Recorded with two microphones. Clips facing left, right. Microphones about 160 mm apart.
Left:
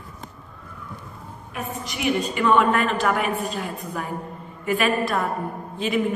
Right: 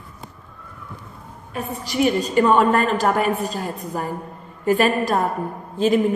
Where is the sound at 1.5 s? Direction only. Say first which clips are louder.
Right 8 dB; 35° right (ahead or behind).